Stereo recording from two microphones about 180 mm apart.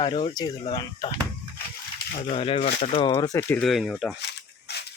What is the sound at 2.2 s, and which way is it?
Speech, 30° left (ahead or behind).